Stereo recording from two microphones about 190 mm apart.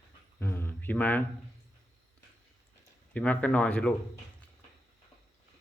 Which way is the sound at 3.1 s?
5° left (ahead or behind).